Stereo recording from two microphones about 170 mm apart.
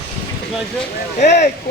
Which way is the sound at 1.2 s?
45° left (ahead or behind).